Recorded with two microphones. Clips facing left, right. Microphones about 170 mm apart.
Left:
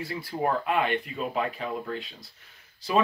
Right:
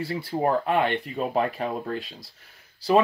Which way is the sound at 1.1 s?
45° right (ahead or behind).